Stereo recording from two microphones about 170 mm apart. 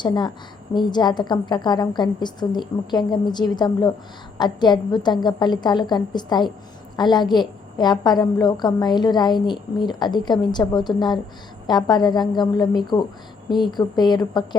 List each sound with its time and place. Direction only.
0.0 s a woman's voice: 25° left (ahead or behind)